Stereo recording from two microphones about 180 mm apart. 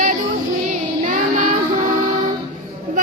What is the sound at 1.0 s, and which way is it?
Child singing, 45° right (ahead or behind).